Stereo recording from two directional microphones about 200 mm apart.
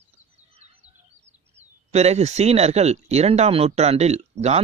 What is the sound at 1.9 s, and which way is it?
Speech, 35° right (ahead or behind).